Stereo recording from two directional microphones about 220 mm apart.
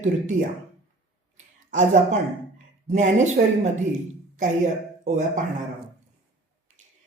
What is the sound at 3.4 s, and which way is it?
Speech, 50° right (ahead or behind).